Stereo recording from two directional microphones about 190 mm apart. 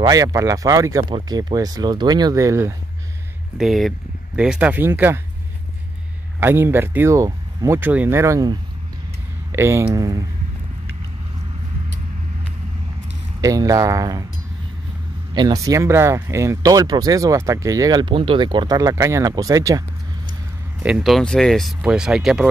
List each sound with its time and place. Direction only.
0.0 s speech: 20° right (ahead or behind)
3.5 s speech: centre (ahead or behind)
6.4 s speech: 10° right (ahead or behind)
13.4 s speech: 20° right (ahead or behind)
15.3 s speech: 20° right (ahead or behind)
20.8 s speech: 5° right (ahead or behind)